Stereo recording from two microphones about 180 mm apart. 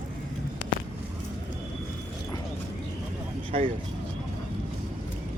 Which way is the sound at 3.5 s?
35° right (ahead or behind).